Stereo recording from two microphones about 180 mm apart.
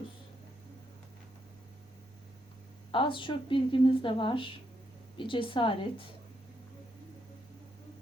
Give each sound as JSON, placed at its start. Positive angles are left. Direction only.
{"t": 2.9, "sound": "a woman's voice", "side_deg": 30}